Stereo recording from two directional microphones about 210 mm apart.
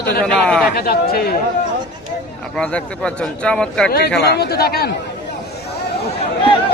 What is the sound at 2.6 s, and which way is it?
A man's voice, 5° left (ahead or behind).